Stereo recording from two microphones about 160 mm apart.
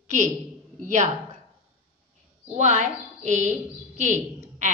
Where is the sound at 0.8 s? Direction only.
50° right (ahead or behind).